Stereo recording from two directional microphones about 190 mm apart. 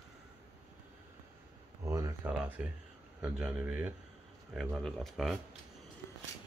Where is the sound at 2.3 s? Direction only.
5° right (ahead or behind).